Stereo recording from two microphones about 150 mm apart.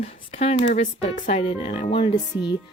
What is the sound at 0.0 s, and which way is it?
Speech, 45° left (ahead or behind).